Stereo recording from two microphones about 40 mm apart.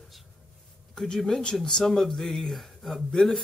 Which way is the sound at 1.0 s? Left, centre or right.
Centre.